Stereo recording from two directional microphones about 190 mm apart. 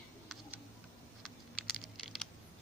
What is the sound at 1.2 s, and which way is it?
Computer keyboard, centre (ahead or behind).